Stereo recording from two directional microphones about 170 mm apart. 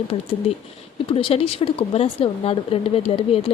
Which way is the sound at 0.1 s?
35° left (ahead or behind).